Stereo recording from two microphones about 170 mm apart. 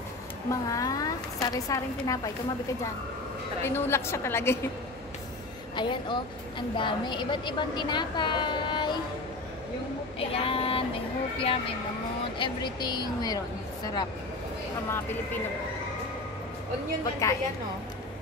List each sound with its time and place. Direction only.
0.5 s a woman's voice: 20° left (ahead or behind)
3.6 s a woman's voice: 15° left (ahead or behind)
5.8 s a woman's voice: 25° left (ahead or behind)
10.1 s a woman's voice: 35° left (ahead or behind)
17.0 s a woman's voice: 20° left (ahead or behind)